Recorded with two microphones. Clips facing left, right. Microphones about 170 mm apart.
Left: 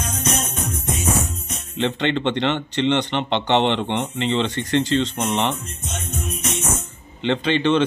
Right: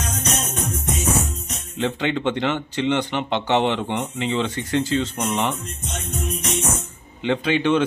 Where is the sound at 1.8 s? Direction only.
5° right (ahead or behind).